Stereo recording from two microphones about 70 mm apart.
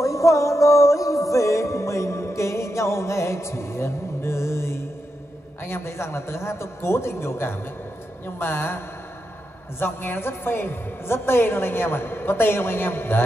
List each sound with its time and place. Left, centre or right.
0.0 s music: left
5.6 s a woman's voice: left